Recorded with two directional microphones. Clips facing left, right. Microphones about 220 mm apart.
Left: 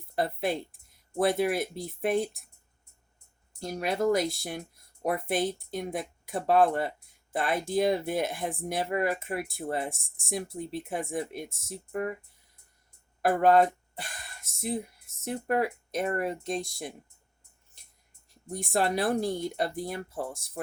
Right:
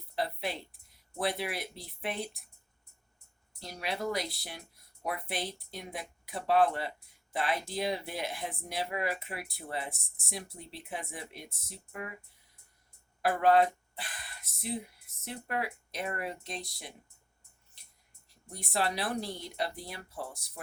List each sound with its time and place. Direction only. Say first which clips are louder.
0.2 s speech: left 6 dB; 50° left (ahead or behind)
3.6 s speech: left 8 dB; 50° left (ahead or behind)
13.2 s speech: left 3 dB; 45° left (ahead or behind)
18.5 s speech: left 6 dB; 50° left (ahead or behind)